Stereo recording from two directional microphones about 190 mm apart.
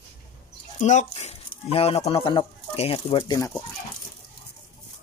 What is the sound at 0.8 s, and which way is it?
Speech, 40° left (ahead or behind).